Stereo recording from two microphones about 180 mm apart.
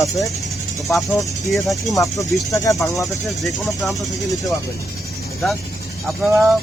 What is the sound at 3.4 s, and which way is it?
Speech, centre (ahead or behind).